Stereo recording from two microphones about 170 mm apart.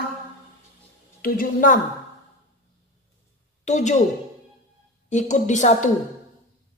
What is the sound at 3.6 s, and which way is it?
Speech, 45° left (ahead or behind).